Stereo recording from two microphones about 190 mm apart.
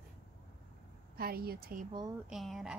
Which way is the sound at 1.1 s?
55° right (ahead or behind).